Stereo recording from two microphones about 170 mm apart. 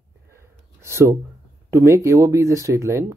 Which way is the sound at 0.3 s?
15° right (ahead or behind).